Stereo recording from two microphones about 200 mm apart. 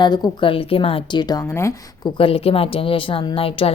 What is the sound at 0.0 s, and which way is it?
A woman's voice, 20° left (ahead or behind).